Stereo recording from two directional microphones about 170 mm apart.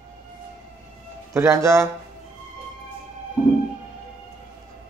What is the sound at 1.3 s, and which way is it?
Speech, 15° right (ahead or behind).